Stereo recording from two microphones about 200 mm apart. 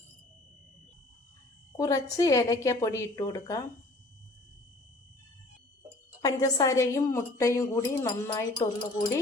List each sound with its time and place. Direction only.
1.7 s a woman's voice: 15° left (ahead or behind)
6.2 s a woman's voice: 20° left (ahead or behind)